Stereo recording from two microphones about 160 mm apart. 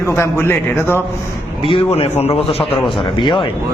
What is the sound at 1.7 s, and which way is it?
A man's voice, 40° left (ahead or behind).